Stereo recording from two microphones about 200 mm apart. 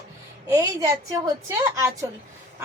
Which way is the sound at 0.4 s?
15° right (ahead or behind).